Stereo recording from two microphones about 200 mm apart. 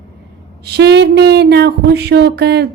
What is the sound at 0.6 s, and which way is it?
Speech, 55° right (ahead or behind).